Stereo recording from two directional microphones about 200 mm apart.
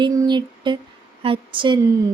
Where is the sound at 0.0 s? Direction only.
20° right (ahead or behind).